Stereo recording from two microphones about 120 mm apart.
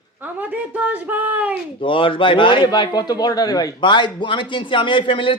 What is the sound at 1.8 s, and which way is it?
A man's voice, 45° left (ahead or behind).